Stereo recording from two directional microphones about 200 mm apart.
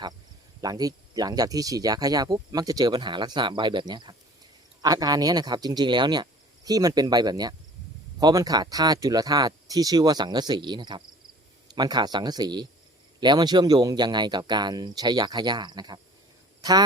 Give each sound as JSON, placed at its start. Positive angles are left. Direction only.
{"t": 0.6, "sound": "speech", "side_deg": -20}